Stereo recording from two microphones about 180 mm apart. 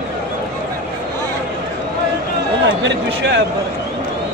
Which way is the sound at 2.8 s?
75° right (ahead or behind).